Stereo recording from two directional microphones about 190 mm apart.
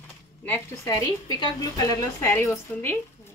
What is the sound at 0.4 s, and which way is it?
A woman's voice, 10° left (ahead or behind).